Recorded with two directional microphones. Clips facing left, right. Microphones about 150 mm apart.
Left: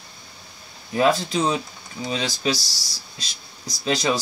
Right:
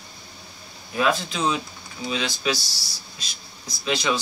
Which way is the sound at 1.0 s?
35° left (ahead or behind).